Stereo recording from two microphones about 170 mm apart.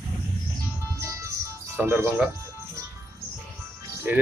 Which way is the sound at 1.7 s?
15° right (ahead or behind).